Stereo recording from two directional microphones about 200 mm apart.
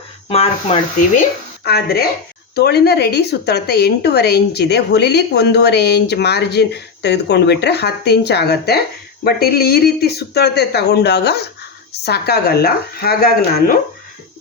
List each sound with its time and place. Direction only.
0.3 s speech: 30° left (ahead or behind)
1.6 s a woman's voice: 50° left (ahead or behind)